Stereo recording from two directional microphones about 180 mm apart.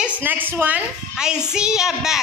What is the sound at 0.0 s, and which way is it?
A child's voice, 10° right (ahead or behind).